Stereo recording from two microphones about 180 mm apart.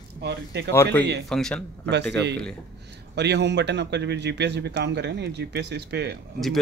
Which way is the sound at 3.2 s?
70° right (ahead or behind).